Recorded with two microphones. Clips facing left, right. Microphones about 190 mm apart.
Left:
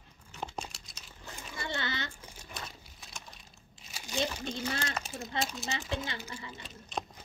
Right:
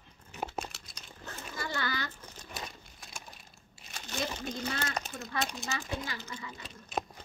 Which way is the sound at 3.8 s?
10° left (ahead or behind).